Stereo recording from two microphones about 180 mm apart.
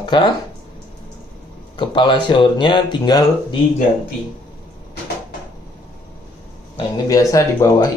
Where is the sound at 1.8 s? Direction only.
25° left (ahead or behind).